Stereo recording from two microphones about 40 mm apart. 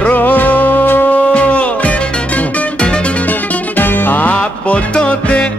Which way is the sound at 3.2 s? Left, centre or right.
Left.